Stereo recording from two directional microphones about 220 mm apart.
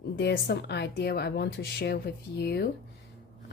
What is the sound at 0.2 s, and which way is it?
A woman's voice, 50° left (ahead or behind).